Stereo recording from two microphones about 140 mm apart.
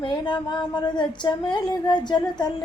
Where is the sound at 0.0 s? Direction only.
30° left (ahead or behind).